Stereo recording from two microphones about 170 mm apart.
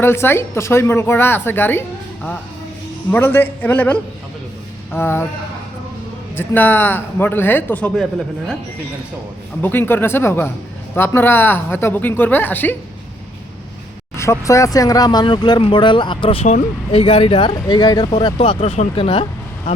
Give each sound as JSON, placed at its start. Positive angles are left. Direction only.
{"t": 0.0, "sound": "a woman's voice", "side_deg": 15}
{"t": 3.1, "sound": "a woman's voice", "side_deg": 15}
{"t": 6.3, "sound": "a woman's voice", "side_deg": 10}
{"t": 9.6, "sound": "a woman's voice", "side_deg": 10}
{"t": 14.2, "sound": "speech", "side_deg": 15}